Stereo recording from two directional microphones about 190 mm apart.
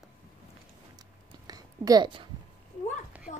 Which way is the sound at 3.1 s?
10° right (ahead or behind).